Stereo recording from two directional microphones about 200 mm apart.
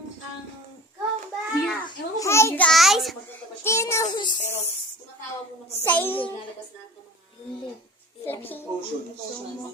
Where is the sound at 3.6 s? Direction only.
15° left (ahead or behind).